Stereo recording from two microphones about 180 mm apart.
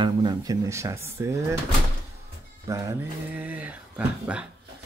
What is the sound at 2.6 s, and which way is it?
Speech, 15° right (ahead or behind).